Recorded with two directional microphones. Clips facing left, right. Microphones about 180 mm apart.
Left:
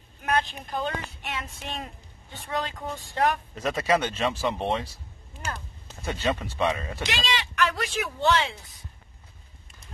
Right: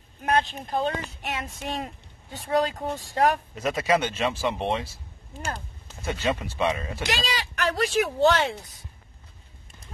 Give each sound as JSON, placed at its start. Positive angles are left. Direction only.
{"t": 0.2, "sound": "speech", "side_deg": -30}
{"t": 1.3, "sound": "speech", "side_deg": -40}
{"t": 3.5, "sound": "speech", "side_deg": -5}
{"t": 6.0, "sound": "speech", "side_deg": -10}
{"t": 7.1, "sound": "speech", "side_deg": -40}